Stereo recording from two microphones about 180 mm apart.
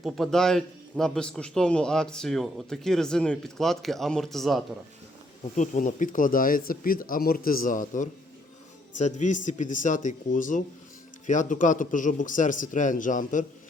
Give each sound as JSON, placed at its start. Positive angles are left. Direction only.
{"t": 0.0, "sound": "a man's voice", "side_deg": 0}
{"t": 5.5, "sound": "speech", "side_deg": 45}